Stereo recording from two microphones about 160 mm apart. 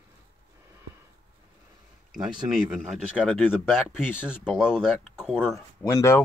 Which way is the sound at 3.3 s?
10° left (ahead or behind).